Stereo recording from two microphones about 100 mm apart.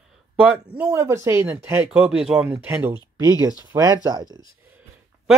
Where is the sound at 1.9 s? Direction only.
10° right (ahead or behind).